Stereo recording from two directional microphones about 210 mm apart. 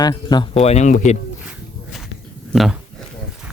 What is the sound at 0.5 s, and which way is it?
Speech, 30° left (ahead or behind).